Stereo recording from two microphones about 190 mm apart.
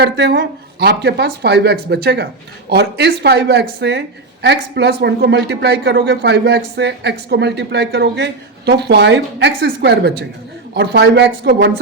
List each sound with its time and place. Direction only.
0.0 s speech: 55° right (ahead or behind)